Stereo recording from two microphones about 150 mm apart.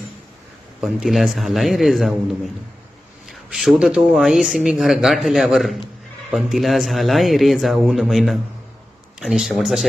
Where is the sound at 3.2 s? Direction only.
Centre (ahead or behind).